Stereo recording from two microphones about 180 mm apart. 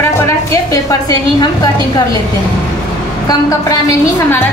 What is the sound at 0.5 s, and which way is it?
A woman's voice, 20° left (ahead or behind).